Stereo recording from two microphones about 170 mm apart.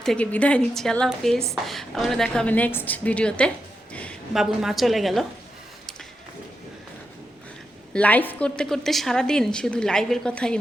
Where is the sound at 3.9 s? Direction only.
10° left (ahead or behind).